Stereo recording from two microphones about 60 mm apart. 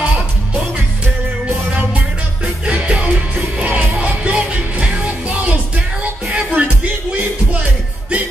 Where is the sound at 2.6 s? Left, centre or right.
Centre.